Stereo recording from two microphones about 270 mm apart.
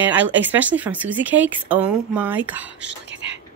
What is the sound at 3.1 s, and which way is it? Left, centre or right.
Speech, right.